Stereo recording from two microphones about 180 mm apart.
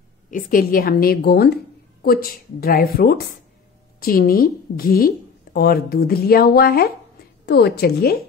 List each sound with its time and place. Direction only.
0.3 s a woman's voice: 50° left (ahead or behind)